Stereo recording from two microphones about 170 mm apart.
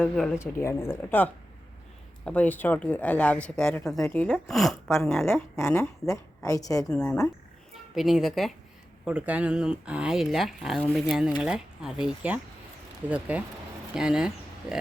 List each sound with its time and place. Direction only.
0.0 s speech: 5° left (ahead or behind)
4.3 s speech: centre (ahead or behind)
4.9 s speech: 15° left (ahead or behind)
6.8 s speech: 10° left (ahead or behind)
7.9 s speech: centre (ahead or behind)